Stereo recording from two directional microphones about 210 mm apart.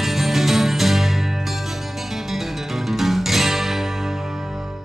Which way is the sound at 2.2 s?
Centre (ahead or behind).